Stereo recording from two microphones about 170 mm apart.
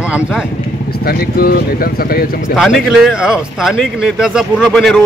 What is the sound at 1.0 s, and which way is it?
Speech, 65° left (ahead or behind).